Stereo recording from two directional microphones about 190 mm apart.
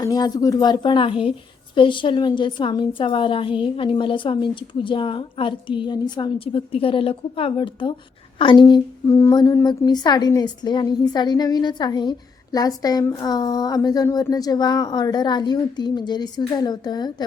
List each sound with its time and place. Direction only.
0.0 s a woman's voice: 20° left (ahead or behind)
8.7 s a woman's voice: 15° left (ahead or behind)